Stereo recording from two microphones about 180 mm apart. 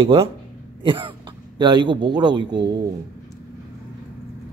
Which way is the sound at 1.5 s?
25° right (ahead or behind).